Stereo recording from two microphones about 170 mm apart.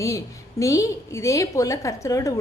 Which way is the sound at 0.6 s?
20° left (ahead or behind).